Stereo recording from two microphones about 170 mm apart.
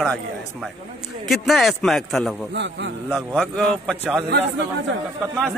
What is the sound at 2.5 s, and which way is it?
Speech, 90° right.